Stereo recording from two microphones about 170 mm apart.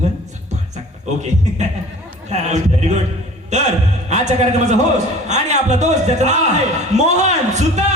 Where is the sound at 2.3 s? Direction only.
40° right (ahead or behind).